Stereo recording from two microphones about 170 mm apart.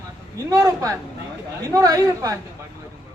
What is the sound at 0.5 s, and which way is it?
A woman's voice, 20° right (ahead or behind).